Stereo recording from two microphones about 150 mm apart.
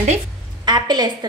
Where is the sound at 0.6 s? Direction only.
30° right (ahead or behind).